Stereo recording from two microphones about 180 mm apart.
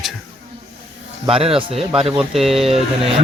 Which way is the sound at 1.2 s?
30° right (ahead or behind).